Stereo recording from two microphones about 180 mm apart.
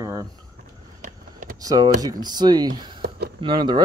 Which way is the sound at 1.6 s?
20° right (ahead or behind).